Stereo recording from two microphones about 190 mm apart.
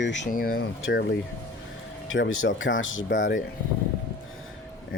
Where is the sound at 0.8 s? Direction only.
75° left (ahead or behind).